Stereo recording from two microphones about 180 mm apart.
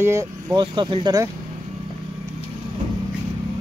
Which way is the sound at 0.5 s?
25° right (ahead or behind).